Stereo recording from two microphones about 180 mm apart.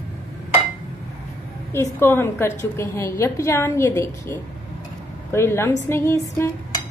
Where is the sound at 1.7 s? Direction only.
15° left (ahead or behind).